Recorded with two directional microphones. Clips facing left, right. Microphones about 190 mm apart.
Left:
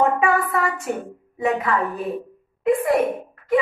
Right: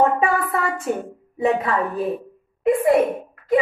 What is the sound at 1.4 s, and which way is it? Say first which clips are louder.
Speech: right 2 dB; 30° right (ahead or behind).